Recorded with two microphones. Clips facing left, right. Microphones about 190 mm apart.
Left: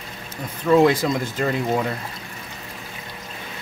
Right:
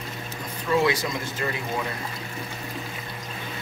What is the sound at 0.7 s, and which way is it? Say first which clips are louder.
Speech: left 7 dB; 55° left (ahead or behind).